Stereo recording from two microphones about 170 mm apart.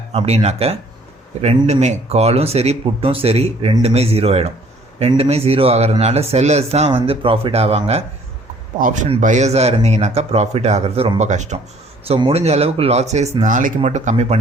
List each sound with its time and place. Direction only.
0.1 s speech: 35° right (ahead or behind)